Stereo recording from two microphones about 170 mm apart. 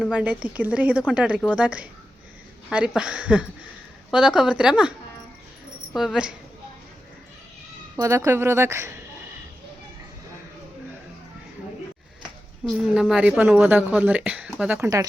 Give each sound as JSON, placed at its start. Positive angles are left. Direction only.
{"t": 0.0, "sound": "a woman's voice", "side_deg": -5}
{"t": 5.9, "sound": "speech", "side_deg": -5}
{"t": 7.9, "sound": "a woman's voice", "side_deg": -20}
{"t": 12.6, "sound": "a woman's voice", "side_deg": -5}